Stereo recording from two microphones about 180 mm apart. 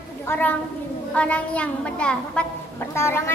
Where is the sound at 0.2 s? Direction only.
10° left (ahead or behind).